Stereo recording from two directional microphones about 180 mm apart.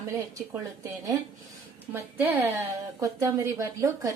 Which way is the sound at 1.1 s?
20° right (ahead or behind).